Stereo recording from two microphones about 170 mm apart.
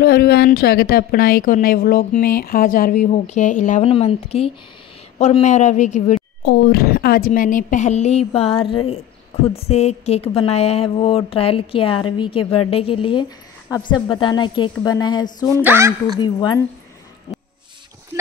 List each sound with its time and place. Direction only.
0.0 s a woman's voice: 65° left (ahead or behind); by 6.2 s 45° left (ahead or behind)
6.4 s a woman's voice: 65° left (ahead or behind); by 15.6 s 20° left (ahead or behind)
15.6 s speech: 15° right (ahead or behind)
16.2 s speech: 25° left (ahead or behind)